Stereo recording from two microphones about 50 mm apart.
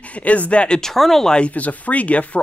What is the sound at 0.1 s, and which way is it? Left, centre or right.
Speech, left.